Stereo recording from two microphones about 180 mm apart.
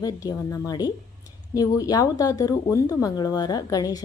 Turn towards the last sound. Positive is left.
turn(degrees=20)  # may be behind; listen again after turning